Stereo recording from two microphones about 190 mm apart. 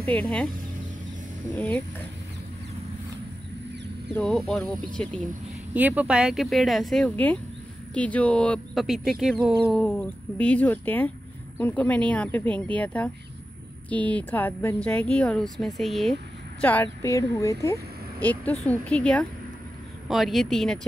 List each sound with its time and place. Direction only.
0.0 s speech: 5° left (ahead or behind)
4.1 s speech: centre (ahead or behind)
5.7 s speech: 10° right (ahead or behind)
16.6 s speech: 10° left (ahead or behind)